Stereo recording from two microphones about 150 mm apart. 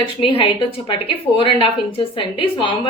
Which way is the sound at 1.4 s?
35° left (ahead or behind).